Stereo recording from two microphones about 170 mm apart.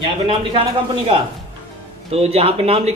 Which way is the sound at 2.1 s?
35° right (ahead or behind).